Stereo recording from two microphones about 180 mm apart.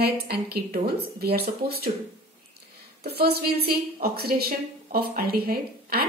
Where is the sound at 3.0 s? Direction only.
60° right (ahead or behind).